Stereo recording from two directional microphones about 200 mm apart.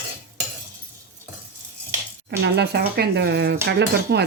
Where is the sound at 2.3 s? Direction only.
55° right (ahead or behind).